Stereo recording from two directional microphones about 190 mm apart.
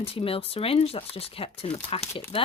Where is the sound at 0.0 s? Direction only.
30° left (ahead or behind).